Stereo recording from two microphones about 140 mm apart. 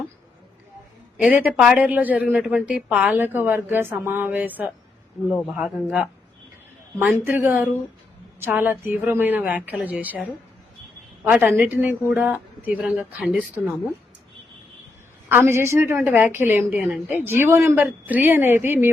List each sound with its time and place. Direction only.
1.1 s a man's voice: 10° right (ahead or behind)
15.3 s speech: 15° right (ahead or behind)